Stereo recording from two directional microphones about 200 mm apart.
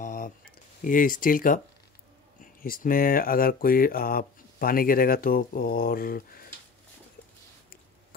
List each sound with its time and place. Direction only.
0.0 s a sound: 45° left (ahead or behind)
0.8 s speech: 40° left (ahead or behind)
2.6 s speech: 45° left (ahead or behind)